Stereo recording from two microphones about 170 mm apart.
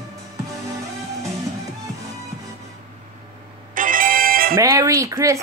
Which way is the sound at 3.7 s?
55° right (ahead or behind).